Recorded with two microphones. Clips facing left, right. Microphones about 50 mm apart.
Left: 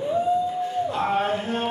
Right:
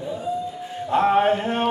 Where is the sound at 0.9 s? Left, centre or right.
Right.